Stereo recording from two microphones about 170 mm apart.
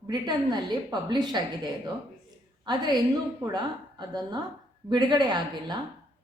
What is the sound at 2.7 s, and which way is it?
A woman's voice, 25° right (ahead or behind).